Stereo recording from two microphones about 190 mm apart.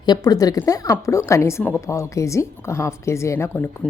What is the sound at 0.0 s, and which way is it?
A woman's voice, 20° left (ahead or behind).